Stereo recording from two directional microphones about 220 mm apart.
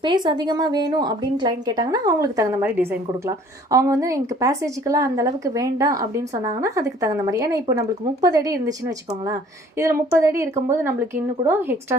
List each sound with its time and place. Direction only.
0.0 s a woman's voice: 20° right (ahead or behind)